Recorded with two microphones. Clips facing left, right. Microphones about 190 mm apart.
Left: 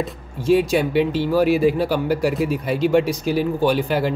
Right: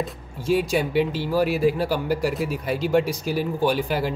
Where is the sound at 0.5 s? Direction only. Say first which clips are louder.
Left 5 dB; 5° right (ahead or behind).